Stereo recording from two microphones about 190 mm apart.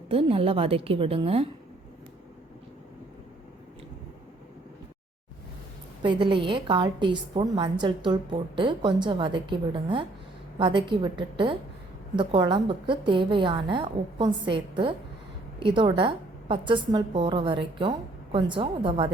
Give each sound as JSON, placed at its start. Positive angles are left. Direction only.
{"t": 0.1, "sound": "a woman's voice", "side_deg": -30}
{"t": 6.0, "sound": "a woman's voice", "side_deg": -25}